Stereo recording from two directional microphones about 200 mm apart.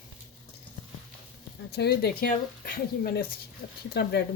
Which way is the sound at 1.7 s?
55° left (ahead or behind).